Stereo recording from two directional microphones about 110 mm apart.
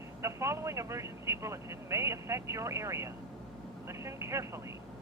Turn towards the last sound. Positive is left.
turn(degrees=-25)  # may be behind; listen again after turning